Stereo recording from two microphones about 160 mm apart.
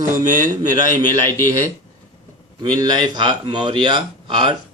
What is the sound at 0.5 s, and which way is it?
Speech, 25° right (ahead or behind).